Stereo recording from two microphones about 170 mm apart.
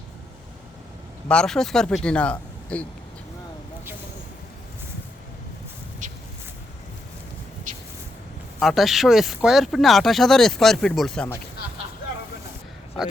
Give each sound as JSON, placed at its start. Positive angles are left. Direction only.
{"t": 1.3, "sound": "speech", "side_deg": 5}
{"t": 6.0, "sound": "a sound", "side_deg": -45}
{"t": 8.5, "sound": "speech", "side_deg": 0}